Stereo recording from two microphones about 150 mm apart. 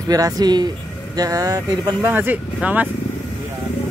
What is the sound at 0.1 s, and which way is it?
Speech, 25° right (ahead or behind).